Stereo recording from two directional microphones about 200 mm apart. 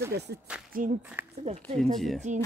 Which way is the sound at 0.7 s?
45° right (ahead or behind).